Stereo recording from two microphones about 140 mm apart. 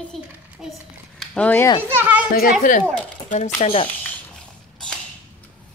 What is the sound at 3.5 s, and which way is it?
Speech, 40° left (ahead or behind).